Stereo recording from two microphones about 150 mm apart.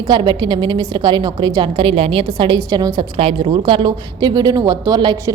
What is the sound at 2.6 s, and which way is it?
Speech, 25° right (ahead or behind).